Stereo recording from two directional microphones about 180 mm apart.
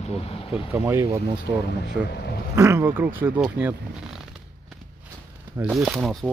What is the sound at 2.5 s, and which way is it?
Speech, 15° right (ahead or behind).